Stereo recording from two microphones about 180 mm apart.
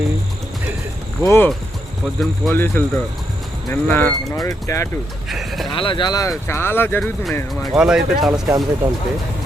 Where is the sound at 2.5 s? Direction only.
10° left (ahead or behind).